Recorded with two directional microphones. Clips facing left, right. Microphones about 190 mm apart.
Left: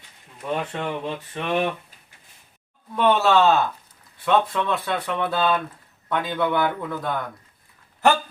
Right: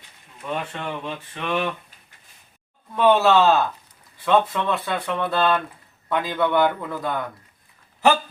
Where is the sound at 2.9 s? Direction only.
Centre (ahead or behind).